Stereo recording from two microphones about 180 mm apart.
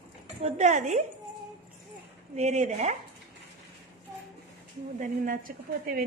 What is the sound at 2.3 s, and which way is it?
Speech, 40° right (ahead or behind).